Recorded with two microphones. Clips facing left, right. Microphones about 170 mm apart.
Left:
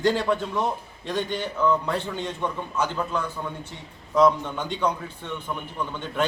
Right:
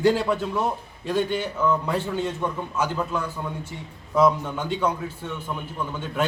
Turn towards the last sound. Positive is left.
turn(degrees=-5)  # may be behind; listen again after turning